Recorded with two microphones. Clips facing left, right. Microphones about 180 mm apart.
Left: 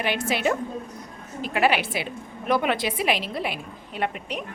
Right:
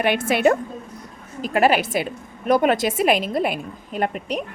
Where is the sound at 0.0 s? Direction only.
55° right (ahead or behind).